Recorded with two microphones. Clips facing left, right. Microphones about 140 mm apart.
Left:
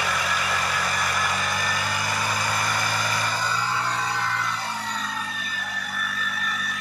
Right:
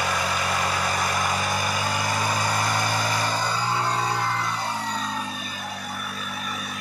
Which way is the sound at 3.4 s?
25° right (ahead or behind).